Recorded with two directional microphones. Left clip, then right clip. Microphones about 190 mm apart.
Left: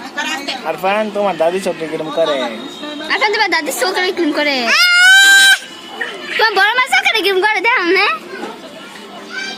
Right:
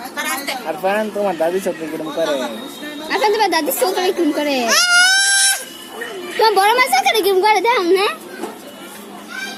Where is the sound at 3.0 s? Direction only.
20° right (ahead or behind).